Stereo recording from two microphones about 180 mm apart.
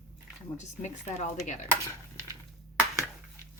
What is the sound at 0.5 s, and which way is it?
A woman's voice, 40° left (ahead or behind).